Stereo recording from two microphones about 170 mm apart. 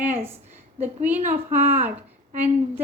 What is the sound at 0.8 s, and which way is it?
A woman's voice, 10° right (ahead or behind).